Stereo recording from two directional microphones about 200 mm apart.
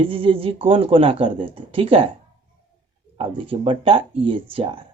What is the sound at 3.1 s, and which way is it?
Speech, 25° right (ahead or behind).